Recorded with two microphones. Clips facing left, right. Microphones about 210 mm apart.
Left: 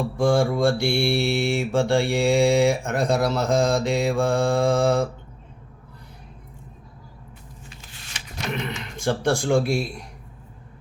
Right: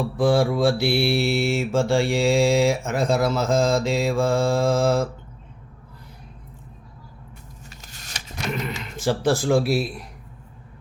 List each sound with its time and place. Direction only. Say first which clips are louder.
0.0 s mantra: right 1 dB; centre (ahead or behind)
7.6 s a sound: even; 40° right (ahead or behind)
8.8 s mantra: right 2 dB; 5° right (ahead or behind)